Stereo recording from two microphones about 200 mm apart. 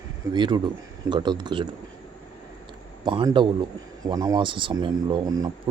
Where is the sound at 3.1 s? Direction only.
25° right (ahead or behind).